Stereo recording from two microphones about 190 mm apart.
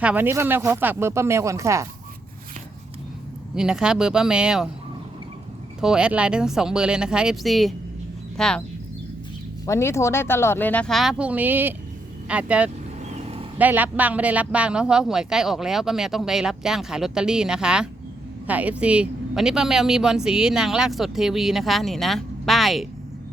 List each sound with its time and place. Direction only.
0.0 s speech: 10° right (ahead or behind)
3.5 s speech: 5° right (ahead or behind)
5.8 s speech: 5° right (ahead or behind)
9.6 s speech: 15° left (ahead or behind); by 12.7 s 5° right (ahead or behind)
13.2 s vehicle: 30° right (ahead or behind)
13.6 s speech: 10° right (ahead or behind)